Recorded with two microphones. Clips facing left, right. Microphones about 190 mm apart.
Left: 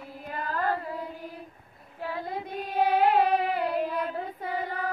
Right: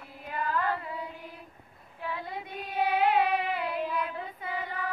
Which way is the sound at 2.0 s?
40° left (ahead or behind).